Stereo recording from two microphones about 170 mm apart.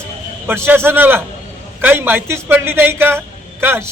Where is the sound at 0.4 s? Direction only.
15° right (ahead or behind).